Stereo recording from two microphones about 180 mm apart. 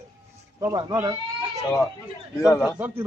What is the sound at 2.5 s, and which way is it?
Speech, 15° left (ahead or behind).